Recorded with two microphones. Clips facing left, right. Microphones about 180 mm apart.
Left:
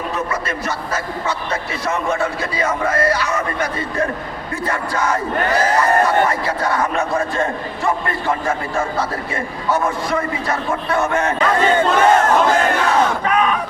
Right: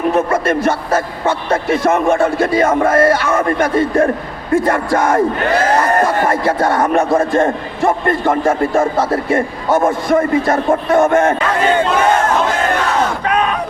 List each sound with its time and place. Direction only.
0.1 s a man's voice: 50° right (ahead or behind)
6.2 s a man's voice: 50° right (ahead or behind)